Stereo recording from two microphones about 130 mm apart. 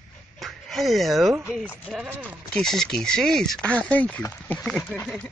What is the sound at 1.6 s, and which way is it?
Speech, 15° left (ahead or behind).